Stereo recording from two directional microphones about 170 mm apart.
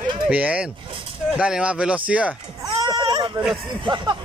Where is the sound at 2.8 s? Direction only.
25° right (ahead or behind).